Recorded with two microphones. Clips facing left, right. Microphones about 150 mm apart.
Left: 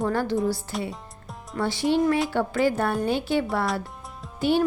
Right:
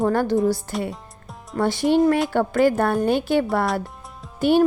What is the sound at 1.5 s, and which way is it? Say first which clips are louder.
Speech: right 5 dB; 50° right (ahead or behind).